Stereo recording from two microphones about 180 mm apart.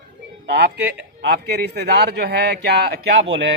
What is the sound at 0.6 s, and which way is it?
A man's voice, 70° right (ahead or behind).